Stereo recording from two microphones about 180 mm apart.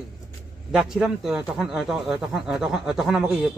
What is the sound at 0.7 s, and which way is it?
Speech, centre (ahead or behind).